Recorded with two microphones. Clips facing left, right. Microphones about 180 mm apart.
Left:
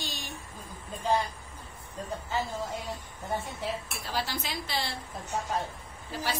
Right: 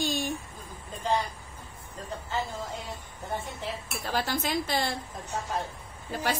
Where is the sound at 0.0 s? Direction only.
50° right (ahead or behind).